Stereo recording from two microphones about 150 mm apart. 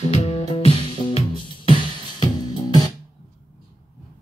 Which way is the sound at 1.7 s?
30° left (ahead or behind).